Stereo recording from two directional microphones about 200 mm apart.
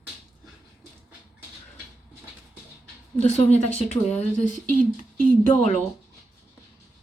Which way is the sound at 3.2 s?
35° left (ahead or behind).